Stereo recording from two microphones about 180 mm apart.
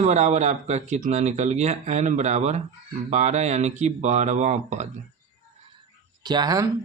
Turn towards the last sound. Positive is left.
turn(degrees=-20)  # may be behind; listen again after turning